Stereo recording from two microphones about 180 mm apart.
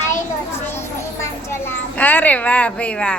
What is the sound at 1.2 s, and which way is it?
A child's voice, 15° left (ahead or behind).